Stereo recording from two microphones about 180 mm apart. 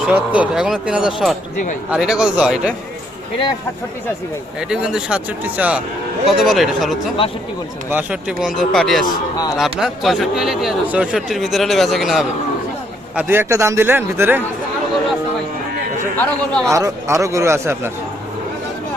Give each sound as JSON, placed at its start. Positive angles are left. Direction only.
{"t": 0.0, "sound": "speech", "side_deg": -5}
{"t": 4.7, "sound": "speech", "side_deg": -5}
{"t": 13.1, "sound": "a man's voice", "side_deg": -10}
{"t": 16.1, "sound": "speech", "side_deg": 5}
{"t": 16.7, "sound": "a man's voice", "side_deg": -15}